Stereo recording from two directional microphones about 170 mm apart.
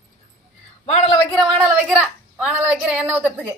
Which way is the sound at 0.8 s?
35° left (ahead or behind).